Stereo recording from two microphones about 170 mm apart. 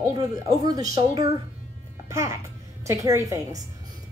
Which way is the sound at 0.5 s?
20° right (ahead or behind).